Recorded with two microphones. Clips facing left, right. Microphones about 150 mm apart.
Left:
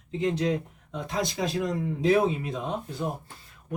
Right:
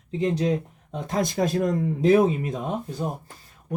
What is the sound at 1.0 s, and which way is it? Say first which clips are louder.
Speech: right 5 dB; 50° right (ahead or behind).